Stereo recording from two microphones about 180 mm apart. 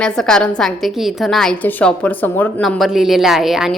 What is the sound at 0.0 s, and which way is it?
A woman's voice, 5° left (ahead or behind).